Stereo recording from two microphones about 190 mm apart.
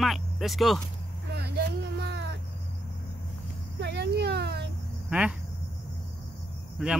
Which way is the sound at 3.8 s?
65° right (ahead or behind).